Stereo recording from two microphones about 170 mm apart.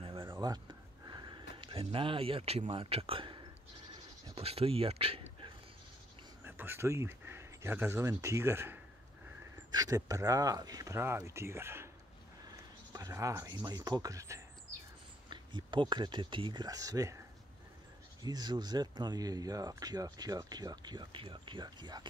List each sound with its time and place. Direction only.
0.0 s a sound: 30° right (ahead or behind)
1.6 s speech: 35° right (ahead or behind)
6.4 s speech: 10° right (ahead or behind)
18.2 s speech: 25° right (ahead or behind)